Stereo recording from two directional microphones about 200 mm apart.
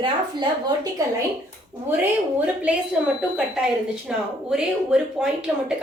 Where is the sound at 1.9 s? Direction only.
10° right (ahead or behind).